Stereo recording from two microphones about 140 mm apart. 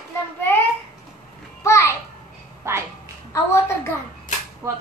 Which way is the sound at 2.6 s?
20° right (ahead or behind).